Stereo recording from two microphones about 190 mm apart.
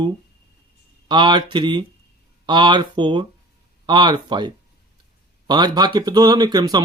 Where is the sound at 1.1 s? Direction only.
25° right (ahead or behind).